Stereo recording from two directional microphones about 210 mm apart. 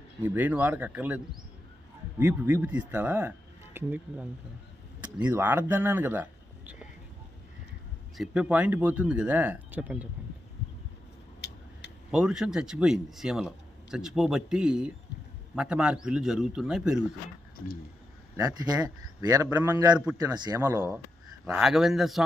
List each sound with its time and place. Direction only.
0.2 s speech: 10° right (ahead or behind)
8.2 s speech: 5° right (ahead or behind)
12.1 s a man's voice: 5° right (ahead or behind)
18.3 s speech: 20° right (ahead or behind)
21.5 s a man's voice: 5° right (ahead or behind)